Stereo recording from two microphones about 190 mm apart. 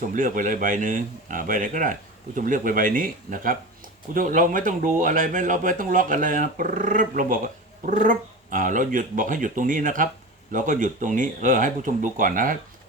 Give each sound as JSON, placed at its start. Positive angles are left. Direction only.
{"t": 0.0, "sound": "speech", "side_deg": -45}